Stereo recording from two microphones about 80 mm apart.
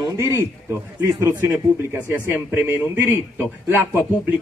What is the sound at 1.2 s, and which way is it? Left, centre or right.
A man's voice, right.